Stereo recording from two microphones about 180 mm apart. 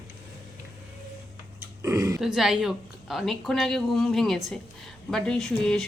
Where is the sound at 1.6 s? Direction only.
15° right (ahead or behind).